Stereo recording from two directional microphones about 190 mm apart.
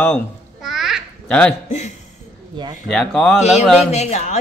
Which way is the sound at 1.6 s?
35° left (ahead or behind).